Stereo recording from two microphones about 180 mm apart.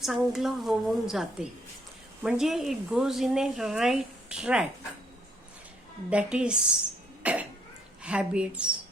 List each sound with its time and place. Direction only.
0.0 s speech: centre (ahead or behind)
6.1 s speech: 5° right (ahead or behind)
7.2 s cough: 10° right (ahead or behind)
8.0 s speech: 5° right (ahead or behind)